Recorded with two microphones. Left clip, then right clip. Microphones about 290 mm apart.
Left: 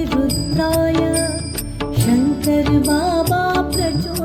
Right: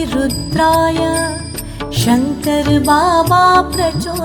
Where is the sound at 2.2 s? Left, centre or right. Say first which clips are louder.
Right 1 dB; centre.